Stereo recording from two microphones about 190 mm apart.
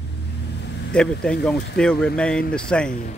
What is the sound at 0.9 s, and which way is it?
Speech, 5° left (ahead or behind).